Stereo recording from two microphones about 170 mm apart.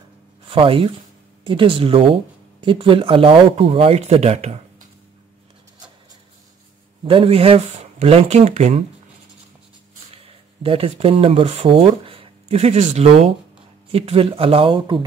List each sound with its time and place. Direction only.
0.5 s speech: 30° right (ahead or behind)
7.1 s speech: 35° right (ahead or behind)
10.1 s speech: 35° right (ahead or behind)